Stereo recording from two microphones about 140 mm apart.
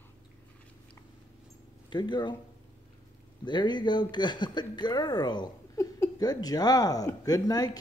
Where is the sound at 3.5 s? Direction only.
30° left (ahead or behind).